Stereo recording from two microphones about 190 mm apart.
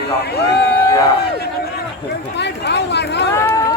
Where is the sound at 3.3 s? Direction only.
15° left (ahead or behind).